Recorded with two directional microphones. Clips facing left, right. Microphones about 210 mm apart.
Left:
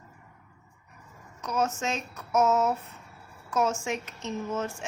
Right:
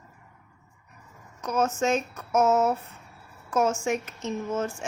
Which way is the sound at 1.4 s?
50° right (ahead or behind).